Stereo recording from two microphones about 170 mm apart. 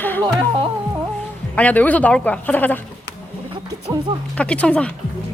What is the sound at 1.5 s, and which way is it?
Speech, 10° left (ahead or behind).